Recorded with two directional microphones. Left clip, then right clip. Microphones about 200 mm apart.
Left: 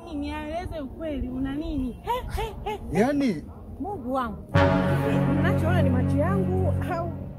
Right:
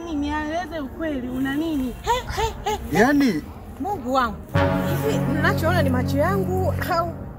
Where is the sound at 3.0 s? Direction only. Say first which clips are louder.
Right 6 dB; 30° left (ahead or behind).